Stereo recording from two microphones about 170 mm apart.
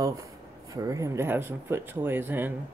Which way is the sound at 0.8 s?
20° right (ahead or behind).